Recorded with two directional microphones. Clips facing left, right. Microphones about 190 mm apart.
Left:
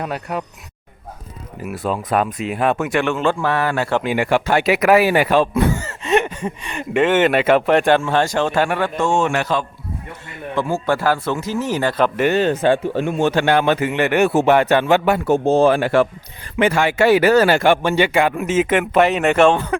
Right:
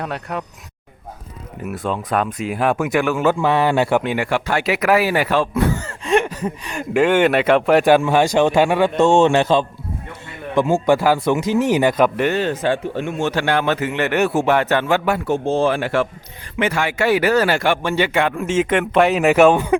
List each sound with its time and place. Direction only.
0.0 s speech: 5° left (ahead or behind)
1.6 s speech: 5° left (ahead or behind)
3.4 s speech: 25° right (ahead or behind)
4.2 s speech: 20° left (ahead or behind)
5.8 s speech: 5° left (ahead or behind); by 8.9 s 15° right (ahead or behind)
9.0 s speech: 25° right (ahead or behind)
12.3 s speech: 20° left (ahead or behind)
13.0 s speech: 35° left (ahead or behind)
13.4 s speech: 15° left (ahead or behind)
15.3 s speech: 40° left (ahead or behind); by 19.7 s 10° right (ahead or behind)